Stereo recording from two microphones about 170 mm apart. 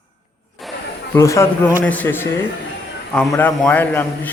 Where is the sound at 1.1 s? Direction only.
15° left (ahead or behind).